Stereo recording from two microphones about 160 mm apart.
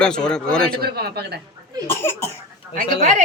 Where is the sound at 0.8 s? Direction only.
75° right (ahead or behind).